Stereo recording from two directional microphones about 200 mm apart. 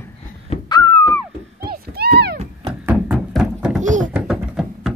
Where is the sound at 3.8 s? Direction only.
40° right (ahead or behind).